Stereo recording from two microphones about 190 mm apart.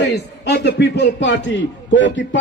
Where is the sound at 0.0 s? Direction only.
65° left (ahead or behind).